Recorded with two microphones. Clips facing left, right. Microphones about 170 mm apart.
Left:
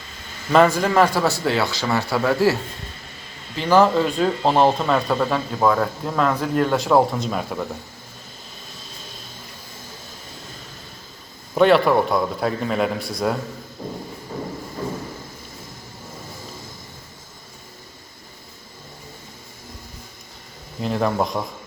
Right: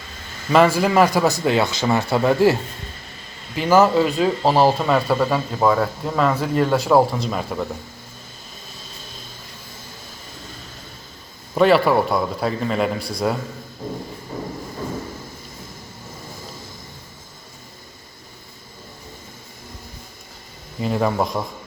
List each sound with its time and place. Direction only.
0.5 s a man's voice: 5° right (ahead or behind)
11.5 s speech: centre (ahead or behind)
20.7 s speech: centre (ahead or behind)